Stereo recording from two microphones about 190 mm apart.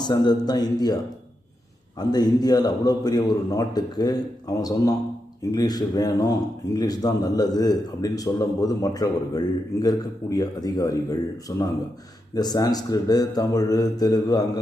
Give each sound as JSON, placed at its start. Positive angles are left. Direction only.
{"t": 0.0, "sound": "a man's voice", "side_deg": 20}
{"t": 2.0, "sound": "a man's voice", "side_deg": 20}